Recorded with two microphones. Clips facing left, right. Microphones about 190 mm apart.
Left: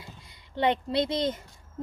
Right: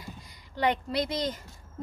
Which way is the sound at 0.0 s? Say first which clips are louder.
Right 3 dB; 25° left (ahead or behind).